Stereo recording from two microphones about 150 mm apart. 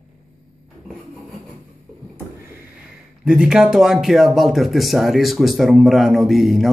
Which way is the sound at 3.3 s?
5° right (ahead or behind).